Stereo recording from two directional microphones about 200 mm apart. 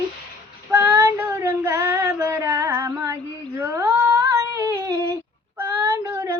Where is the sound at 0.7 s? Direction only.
10° right (ahead or behind).